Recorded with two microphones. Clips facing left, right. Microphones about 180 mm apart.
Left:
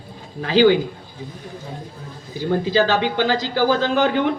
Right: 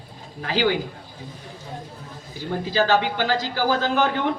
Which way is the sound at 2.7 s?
20° left (ahead or behind).